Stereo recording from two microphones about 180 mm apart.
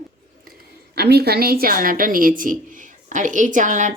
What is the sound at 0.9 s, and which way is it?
Speech, 65° right (ahead or behind).